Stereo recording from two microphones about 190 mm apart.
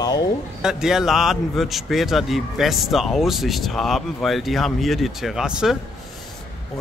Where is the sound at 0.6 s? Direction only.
5° right (ahead or behind).